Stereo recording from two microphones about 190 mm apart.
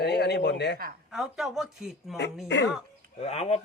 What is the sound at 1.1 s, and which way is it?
Speech, centre (ahead or behind).